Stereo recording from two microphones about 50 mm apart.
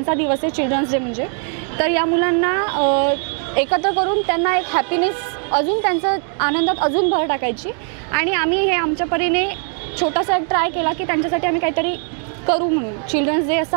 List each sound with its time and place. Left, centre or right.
0.0 s a woman's voice: right